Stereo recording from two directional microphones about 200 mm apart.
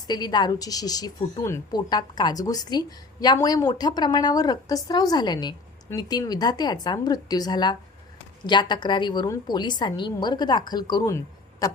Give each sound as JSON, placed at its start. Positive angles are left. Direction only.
{"t": 0.1, "sound": "a woman's voice", "side_deg": 20}